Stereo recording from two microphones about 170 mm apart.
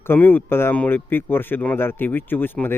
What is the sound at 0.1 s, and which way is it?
Speech, 10° left (ahead or behind).